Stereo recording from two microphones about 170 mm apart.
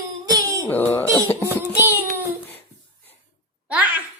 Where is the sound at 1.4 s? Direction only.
15° right (ahead or behind).